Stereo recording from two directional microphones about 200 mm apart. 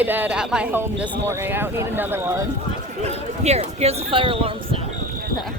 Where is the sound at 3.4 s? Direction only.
30° right (ahead or behind).